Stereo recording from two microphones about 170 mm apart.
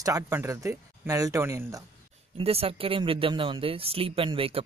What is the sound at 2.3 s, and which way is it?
A man's voice, 35° right (ahead or behind).